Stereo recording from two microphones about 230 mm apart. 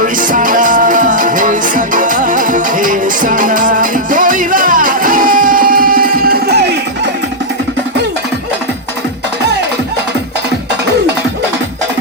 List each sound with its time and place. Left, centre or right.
0.0 s music: right